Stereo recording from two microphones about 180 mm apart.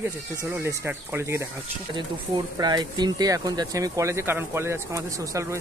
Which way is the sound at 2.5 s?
20° right (ahead or behind).